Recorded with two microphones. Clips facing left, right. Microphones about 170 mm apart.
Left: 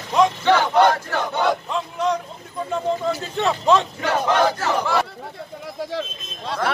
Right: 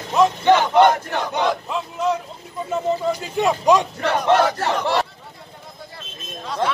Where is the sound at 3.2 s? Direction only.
10° right (ahead or behind).